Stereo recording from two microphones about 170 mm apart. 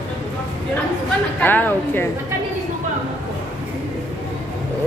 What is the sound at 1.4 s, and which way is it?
Speech, 10° left (ahead or behind).